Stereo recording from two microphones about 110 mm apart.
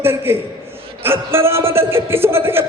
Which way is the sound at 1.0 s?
20° right (ahead or behind).